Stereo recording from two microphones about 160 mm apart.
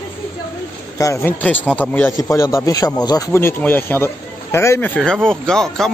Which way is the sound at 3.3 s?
15° left (ahead or behind).